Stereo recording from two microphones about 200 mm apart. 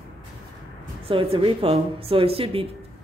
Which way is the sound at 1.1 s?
30° right (ahead or behind).